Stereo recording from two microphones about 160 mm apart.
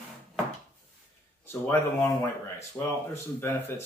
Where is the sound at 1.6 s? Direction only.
15° left (ahead or behind).